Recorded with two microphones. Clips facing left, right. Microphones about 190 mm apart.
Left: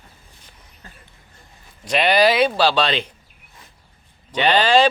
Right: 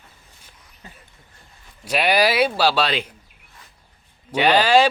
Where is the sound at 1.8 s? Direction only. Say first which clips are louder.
Left 3 dB; 10° right (ahead or behind).